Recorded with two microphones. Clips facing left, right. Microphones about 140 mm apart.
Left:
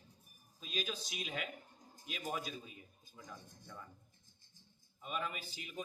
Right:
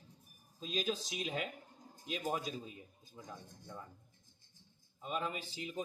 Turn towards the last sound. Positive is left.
turn(degrees=-35)  # may be behind; listen again after turning